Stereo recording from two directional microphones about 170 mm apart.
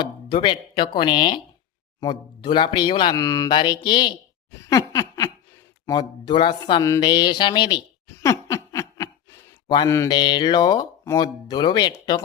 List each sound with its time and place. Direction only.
0.0 s speech: 25° left (ahead or behind)
4.5 s laughter: 15° left (ahead or behind)
5.8 s speech: 25° left (ahead or behind)
8.0 s a sound: 15° left (ahead or behind)
9.7 s speech: 20° left (ahead or behind)